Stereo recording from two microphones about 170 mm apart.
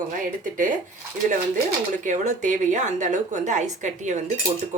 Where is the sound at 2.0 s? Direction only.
45° right (ahead or behind).